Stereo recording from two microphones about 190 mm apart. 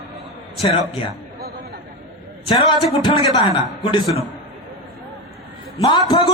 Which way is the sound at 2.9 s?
25° left (ahead or behind).